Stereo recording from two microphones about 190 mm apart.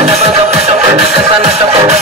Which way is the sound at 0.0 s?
35° right (ahead or behind).